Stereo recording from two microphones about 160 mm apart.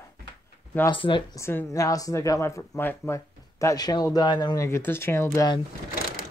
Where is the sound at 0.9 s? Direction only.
30° left (ahead or behind).